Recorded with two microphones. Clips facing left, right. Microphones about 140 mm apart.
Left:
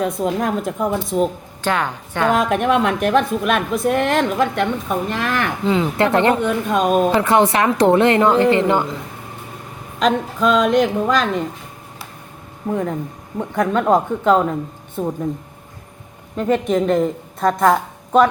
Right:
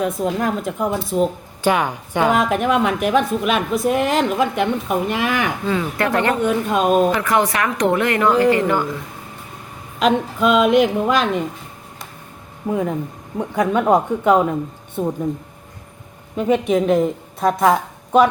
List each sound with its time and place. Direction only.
0.0 s a woman's voice: centre (ahead or behind)
1.6 s a woman's voice: 10° right (ahead or behind)
2.4 s a woman's voice: centre (ahead or behind)
5.6 s a woman's voice: 20° left (ahead or behind)
6.4 s a woman's voice: centre (ahead or behind)
7.1 s a woman's voice: 25° left (ahead or behind)
10.0 s a woman's voice: 5° right (ahead or behind)
12.6 s a woman's voice: 5° right (ahead or behind)
16.3 s a woman's voice: 5° right (ahead or behind)